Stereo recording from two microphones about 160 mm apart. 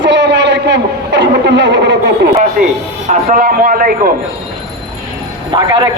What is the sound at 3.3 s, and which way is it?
Speech, 60° right (ahead or behind).